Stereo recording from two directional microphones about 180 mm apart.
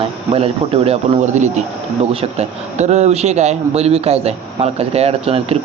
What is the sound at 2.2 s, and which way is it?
A man's voice, 35° right (ahead or behind).